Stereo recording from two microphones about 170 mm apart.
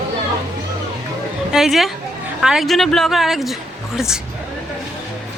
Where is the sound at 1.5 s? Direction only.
Centre (ahead or behind).